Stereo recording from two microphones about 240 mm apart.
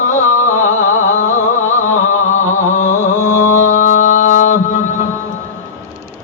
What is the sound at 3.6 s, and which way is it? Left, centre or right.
Music, left.